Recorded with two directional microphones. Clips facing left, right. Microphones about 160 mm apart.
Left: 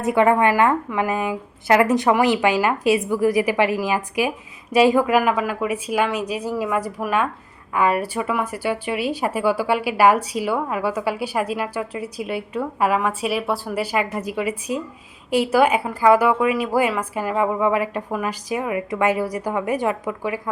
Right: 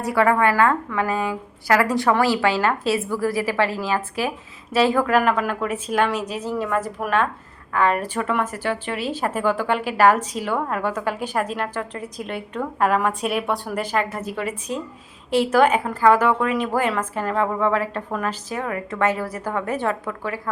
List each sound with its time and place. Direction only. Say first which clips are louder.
0.0 s speech: left 2 dB; 20° left (ahead or behind)